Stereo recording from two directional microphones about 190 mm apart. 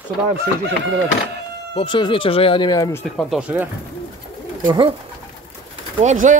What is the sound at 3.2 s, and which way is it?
Speech, 5° right (ahead or behind).